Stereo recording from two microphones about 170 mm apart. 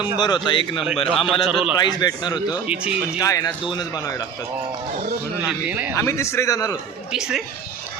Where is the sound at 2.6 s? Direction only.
5° right (ahead or behind).